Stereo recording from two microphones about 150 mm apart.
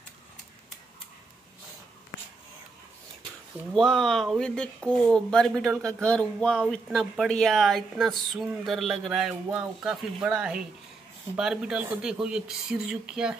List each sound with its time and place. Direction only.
3.7 s speech: 5° left (ahead or behind)